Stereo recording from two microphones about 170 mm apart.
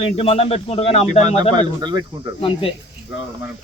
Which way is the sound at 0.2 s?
35° left (ahead or behind).